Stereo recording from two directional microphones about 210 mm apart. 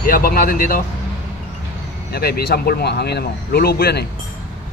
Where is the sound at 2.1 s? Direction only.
50° left (ahead or behind).